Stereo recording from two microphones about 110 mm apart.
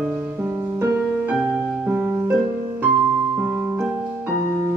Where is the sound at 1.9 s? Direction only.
15° right (ahead or behind).